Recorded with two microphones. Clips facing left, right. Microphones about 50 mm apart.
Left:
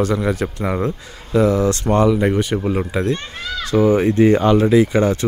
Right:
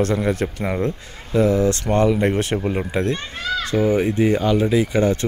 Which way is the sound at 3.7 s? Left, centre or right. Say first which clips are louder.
Left 5 dB; centre.